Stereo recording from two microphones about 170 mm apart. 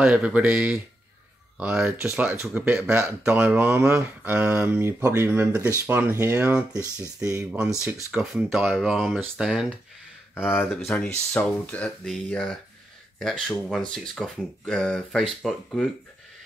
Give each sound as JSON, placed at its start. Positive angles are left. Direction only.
{"t": 0.0, "sound": "speech", "side_deg": -5}
{"t": 7.8, "sound": "speech", "side_deg": -5}